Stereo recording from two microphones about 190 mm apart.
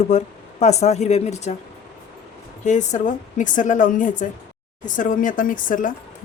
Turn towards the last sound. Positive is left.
turn(degrees=45)  # may be behind; listen again after turning